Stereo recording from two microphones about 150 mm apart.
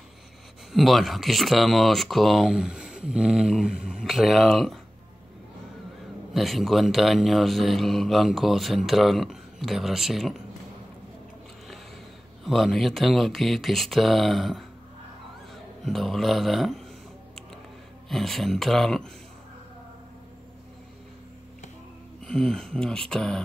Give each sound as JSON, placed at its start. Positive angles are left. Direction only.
{"t": 0.7, "sound": "speech", "side_deg": 0}
{"t": 6.3, "sound": "speech", "side_deg": 0}
{"t": 12.4, "sound": "speech", "side_deg": 0}
{"t": 15.8, "sound": "speech", "side_deg": 0}
{"t": 18.0, "sound": "speech", "side_deg": 0}
{"t": 22.2, "sound": "speech", "side_deg": 5}